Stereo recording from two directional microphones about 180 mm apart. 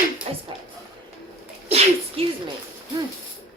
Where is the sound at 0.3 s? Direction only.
30° right (ahead or behind).